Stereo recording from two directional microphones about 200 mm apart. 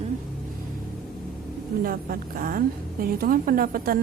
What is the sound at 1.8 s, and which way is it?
A woman's voice, 45° right (ahead or behind).